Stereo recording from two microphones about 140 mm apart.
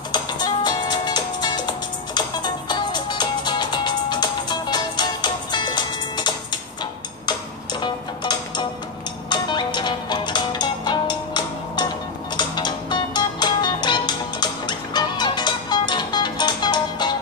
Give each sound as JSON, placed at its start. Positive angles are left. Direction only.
{"t": 0.1, "sound": "music", "side_deg": 30}